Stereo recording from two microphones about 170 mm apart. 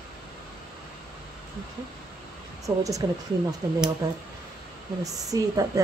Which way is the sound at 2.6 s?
20° right (ahead or behind).